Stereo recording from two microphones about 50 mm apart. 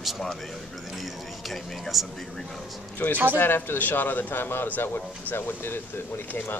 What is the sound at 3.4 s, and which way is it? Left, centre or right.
A man's voice, left.